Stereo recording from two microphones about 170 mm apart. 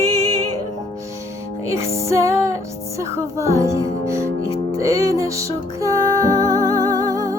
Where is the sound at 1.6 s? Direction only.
15° right (ahead or behind).